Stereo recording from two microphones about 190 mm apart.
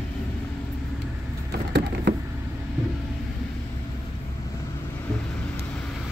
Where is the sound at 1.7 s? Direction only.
60° right (ahead or behind).